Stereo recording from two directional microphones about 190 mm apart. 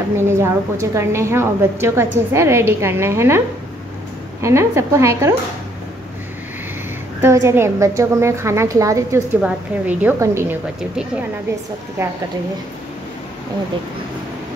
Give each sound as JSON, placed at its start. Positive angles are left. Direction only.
{"t": 0.3, "sound": "a woman's voice", "side_deg": -15}
{"t": 7.2, "sound": "a woman's voice", "side_deg": -15}
{"t": 12.0, "sound": "a woman's voice", "side_deg": -15}